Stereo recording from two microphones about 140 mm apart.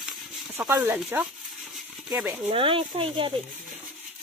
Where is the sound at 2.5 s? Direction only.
40° right (ahead or behind).